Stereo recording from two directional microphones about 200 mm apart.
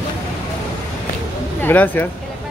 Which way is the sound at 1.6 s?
10° left (ahead or behind).